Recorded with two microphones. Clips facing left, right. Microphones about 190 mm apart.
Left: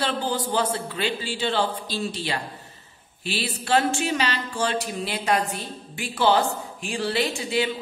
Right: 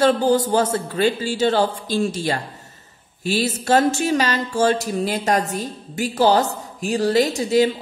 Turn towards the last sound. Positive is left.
turn(degrees=-40)  # may be behind; listen again after turning